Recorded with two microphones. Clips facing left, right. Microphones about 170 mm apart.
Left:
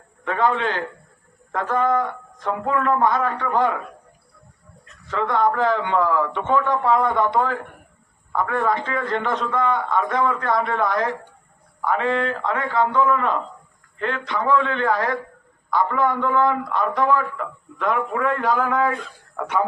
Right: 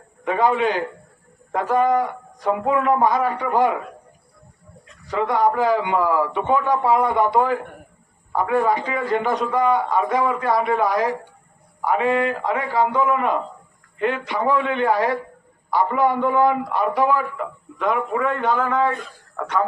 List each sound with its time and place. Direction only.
0.3 s a man's voice: 15° right (ahead or behind)
5.0 s a man's voice: 15° right (ahead or behind); by 18.9 s centre (ahead or behind)
19.4 s speech: 15° left (ahead or behind)